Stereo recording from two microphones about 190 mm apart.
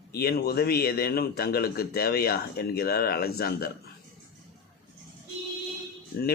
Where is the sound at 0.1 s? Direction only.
55° left (ahead or behind).